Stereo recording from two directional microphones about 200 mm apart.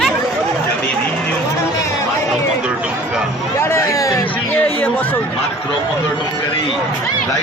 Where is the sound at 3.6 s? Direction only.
15° left (ahead or behind).